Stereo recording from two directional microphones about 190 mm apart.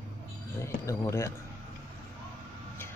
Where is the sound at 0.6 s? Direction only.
15° left (ahead or behind).